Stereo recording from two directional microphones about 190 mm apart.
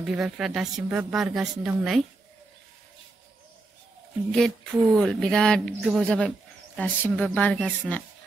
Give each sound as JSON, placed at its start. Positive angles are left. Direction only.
{"t": 0.0, "sound": "speech", "side_deg": 0}
{"t": 4.3, "sound": "speech", "side_deg": 5}